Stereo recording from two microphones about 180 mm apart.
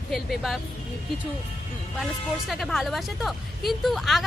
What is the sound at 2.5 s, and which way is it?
A woman's voice, centre (ahead or behind).